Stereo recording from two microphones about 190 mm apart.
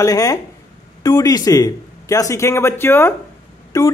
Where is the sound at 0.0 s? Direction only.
20° left (ahead or behind).